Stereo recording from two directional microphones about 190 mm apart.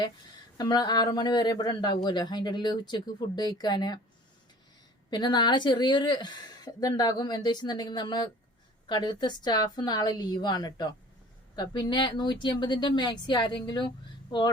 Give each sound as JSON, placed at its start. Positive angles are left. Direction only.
{"t": 0.5, "sound": "speech", "side_deg": 20}
{"t": 5.1, "sound": "speech", "side_deg": 25}